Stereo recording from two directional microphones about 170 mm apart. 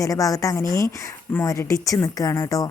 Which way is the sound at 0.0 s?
20° left (ahead or behind).